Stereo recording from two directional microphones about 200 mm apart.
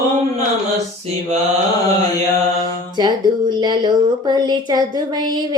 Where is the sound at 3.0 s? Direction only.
20° right (ahead or behind).